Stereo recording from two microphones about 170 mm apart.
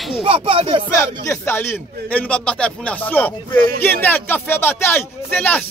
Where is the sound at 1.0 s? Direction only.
15° left (ahead or behind).